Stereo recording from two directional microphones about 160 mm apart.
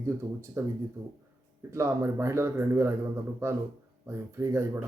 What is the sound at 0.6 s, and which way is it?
Speech, 20° right (ahead or behind).